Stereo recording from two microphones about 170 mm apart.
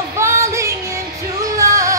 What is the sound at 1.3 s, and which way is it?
Music, 20° right (ahead or behind).